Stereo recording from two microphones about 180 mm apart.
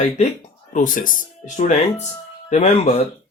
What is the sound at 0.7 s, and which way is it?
Speech, 45° left (ahead or behind).